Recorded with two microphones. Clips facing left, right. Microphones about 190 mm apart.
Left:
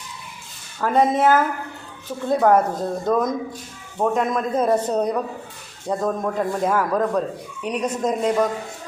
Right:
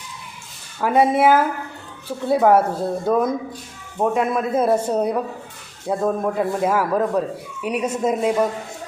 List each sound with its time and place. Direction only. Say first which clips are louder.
0.8 s a man's voice: right 2 dB; 10° right (ahead or behind)